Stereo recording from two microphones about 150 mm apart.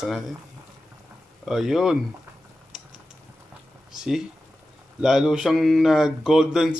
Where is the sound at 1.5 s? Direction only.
5° right (ahead or behind).